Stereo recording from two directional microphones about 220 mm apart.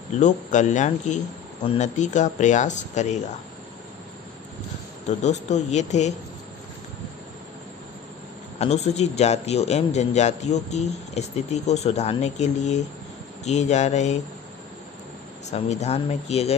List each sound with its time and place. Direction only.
0.2 s speech: 35° left (ahead or behind)
5.0 s speech: 30° left (ahead or behind)
8.5 s a man's voice: 30° left (ahead or behind)
15.5 s a man's voice: 30° left (ahead or behind)